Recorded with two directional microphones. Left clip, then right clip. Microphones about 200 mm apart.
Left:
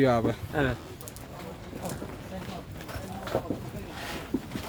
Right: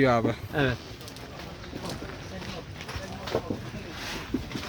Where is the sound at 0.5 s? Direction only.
55° right (ahead or behind).